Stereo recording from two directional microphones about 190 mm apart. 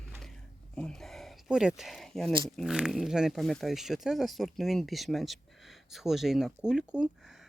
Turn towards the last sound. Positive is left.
turn(degrees=-5)  # may be behind; listen again after turning